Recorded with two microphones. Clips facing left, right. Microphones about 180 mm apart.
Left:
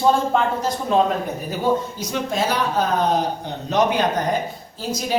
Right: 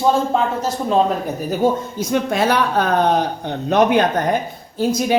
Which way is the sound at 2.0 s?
55° right (ahead or behind).